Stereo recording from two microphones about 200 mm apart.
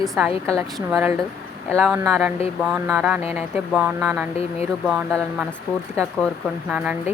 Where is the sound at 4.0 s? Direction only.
10° right (ahead or behind).